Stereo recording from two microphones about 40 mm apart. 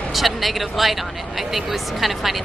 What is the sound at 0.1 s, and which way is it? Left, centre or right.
A woman's voice, centre.